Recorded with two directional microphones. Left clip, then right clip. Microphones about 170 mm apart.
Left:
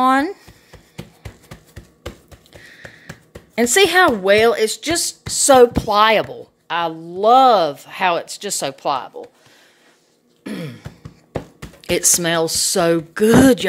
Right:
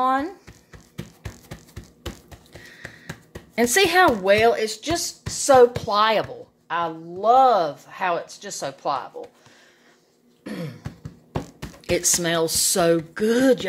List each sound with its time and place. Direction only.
0.0 s a sound: 55° left (ahead or behind)
3.5 s speech: 30° left (ahead or behind); by 5.7 s 45° left (ahead or behind)
5.9 s speech: 35° left (ahead or behind)
6.7 s speech: 50° left (ahead or behind)
10.4 s throat clearing: 55° left (ahead or behind)
11.9 s speech: 40° left (ahead or behind)